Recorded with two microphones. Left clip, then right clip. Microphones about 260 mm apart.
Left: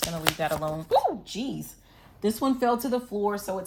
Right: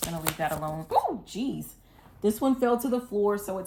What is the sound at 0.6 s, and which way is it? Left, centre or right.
Speech, left.